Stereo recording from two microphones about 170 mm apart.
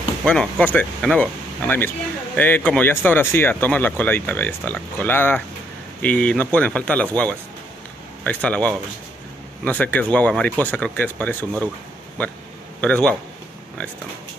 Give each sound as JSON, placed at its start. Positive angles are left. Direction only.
{"t": 0.2, "sound": "speech", "side_deg": 5}
{"t": 12.8, "sound": "speech", "side_deg": 5}